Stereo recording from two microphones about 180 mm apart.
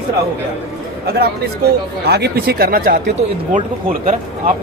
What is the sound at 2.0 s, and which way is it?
Speech, 65° right (ahead or behind).